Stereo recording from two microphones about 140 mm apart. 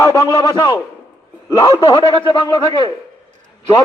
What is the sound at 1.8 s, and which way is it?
A man's voice, 35° left (ahead or behind).